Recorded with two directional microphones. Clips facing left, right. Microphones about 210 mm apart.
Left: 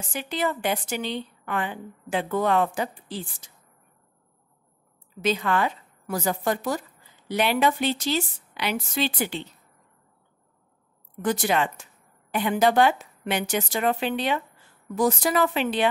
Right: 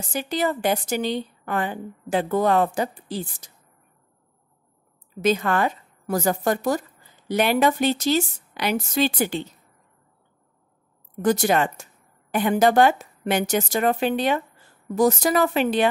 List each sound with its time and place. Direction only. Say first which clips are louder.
0.1 s a woman's voice: right 3 dB; 40° right (ahead or behind)
5.2 s a woman's voice: right 3 dB; 45° right (ahead or behind)
11.2 s a woman's voice: right 4 dB; 40° right (ahead or behind)